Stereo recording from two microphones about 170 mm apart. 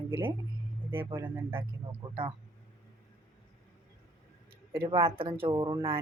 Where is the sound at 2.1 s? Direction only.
30° right (ahead or behind).